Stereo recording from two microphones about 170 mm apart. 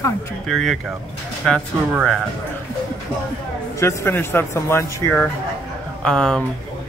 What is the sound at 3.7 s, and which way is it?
Speech, 15° left (ahead or behind).